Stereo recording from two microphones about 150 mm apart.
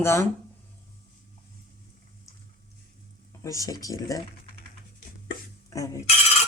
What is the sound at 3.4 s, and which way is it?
Speech, 20° left (ahead or behind).